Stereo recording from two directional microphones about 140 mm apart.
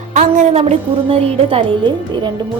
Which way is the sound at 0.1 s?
65° right (ahead or behind).